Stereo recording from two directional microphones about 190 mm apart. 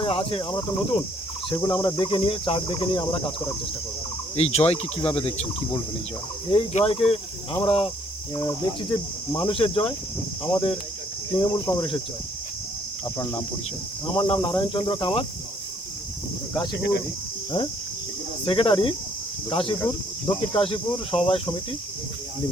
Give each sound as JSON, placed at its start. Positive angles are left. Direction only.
{"t": 0.0, "sound": "cricket", "side_deg": 30}
{"t": 4.4, "sound": "speech", "side_deg": 35}
{"t": 6.5, "sound": "cricket", "side_deg": 30}
{"t": 14.1, "sound": "cricket", "side_deg": 25}
{"t": 18.4, "sound": "cricket", "side_deg": 25}